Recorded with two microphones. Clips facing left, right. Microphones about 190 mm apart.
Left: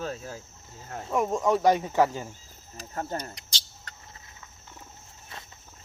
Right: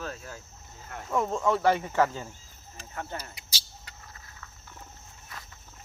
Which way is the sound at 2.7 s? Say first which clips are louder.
Left 5 dB; 40° left (ahead or behind).